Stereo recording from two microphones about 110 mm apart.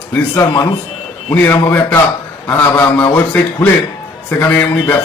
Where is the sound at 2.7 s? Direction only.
15° left (ahead or behind).